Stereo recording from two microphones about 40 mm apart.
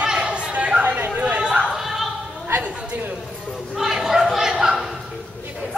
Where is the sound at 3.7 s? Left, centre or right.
Centre.